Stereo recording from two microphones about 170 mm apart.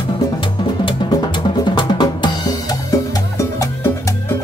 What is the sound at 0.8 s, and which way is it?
Drum, 30° left (ahead or behind).